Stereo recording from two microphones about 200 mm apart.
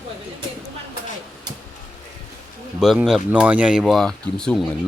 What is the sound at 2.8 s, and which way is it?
Speech, centre (ahead or behind).